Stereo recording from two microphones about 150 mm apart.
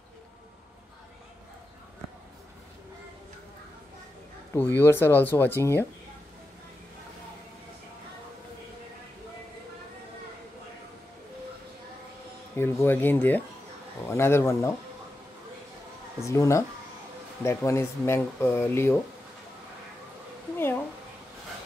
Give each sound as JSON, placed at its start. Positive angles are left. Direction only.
{"t": 4.6, "sound": "speech", "side_deg": 15}
{"t": 12.5, "sound": "speech", "side_deg": 15}
{"t": 16.2, "sound": "speech", "side_deg": 20}
{"t": 20.5, "sound": "a sound", "side_deg": 15}